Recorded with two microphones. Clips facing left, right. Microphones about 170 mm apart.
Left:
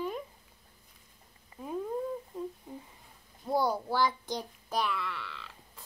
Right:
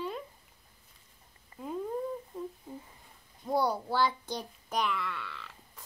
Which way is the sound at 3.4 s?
10° left (ahead or behind).